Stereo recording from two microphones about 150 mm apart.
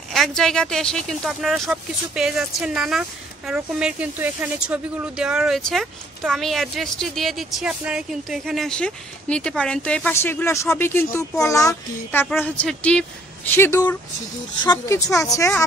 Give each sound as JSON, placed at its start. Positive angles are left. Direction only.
{"t": 0.1, "sound": "speech", "side_deg": 0}
{"t": 10.1, "sound": "speech", "side_deg": 15}
{"t": 12.6, "sound": "speech", "side_deg": 5}
{"t": 14.6, "sound": "speech", "side_deg": 30}